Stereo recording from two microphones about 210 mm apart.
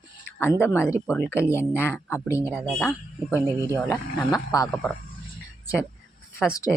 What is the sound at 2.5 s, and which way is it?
Speech, centre (ahead or behind).